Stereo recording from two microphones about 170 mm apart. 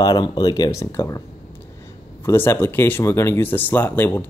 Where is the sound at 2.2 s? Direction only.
15° left (ahead or behind).